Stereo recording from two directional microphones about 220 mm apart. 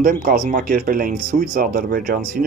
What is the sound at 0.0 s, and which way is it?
Speech, 40° right (ahead or behind).